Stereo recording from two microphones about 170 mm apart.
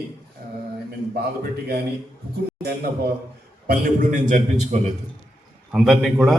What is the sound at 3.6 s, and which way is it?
A man's voice, 55° right (ahead or behind).